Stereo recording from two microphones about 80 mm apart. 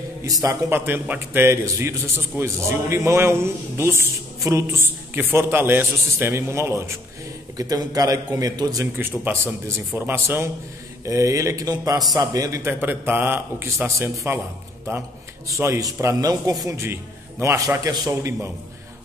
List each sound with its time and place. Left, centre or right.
0.2 s a man's voice: right
0.7 s a man's voice: right
7.5 s a man's voice: right
8.9 s a man's voice: right
11.1 s a man's voice: right
12.6 s a man's voice: right